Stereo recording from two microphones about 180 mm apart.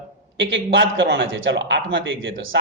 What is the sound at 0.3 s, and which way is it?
Speech, 90° right.